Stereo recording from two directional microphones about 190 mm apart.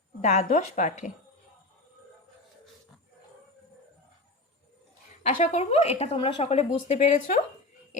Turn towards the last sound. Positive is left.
turn(degrees=40)  # may be behind; listen again after turning